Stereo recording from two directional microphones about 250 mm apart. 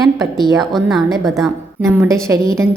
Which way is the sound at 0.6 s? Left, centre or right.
Centre.